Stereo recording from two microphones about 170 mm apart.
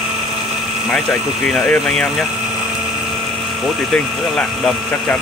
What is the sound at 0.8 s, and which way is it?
Speech, centre (ahead or behind).